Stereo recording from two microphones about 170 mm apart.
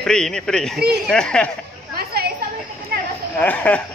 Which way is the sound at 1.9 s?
65° right (ahead or behind).